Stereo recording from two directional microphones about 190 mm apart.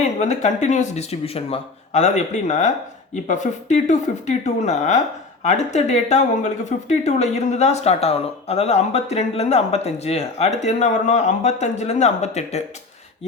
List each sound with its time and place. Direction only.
0.0 s speech: 40° left (ahead or behind)